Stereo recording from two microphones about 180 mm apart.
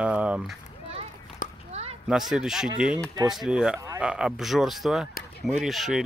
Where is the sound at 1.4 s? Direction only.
45° left (ahead or behind).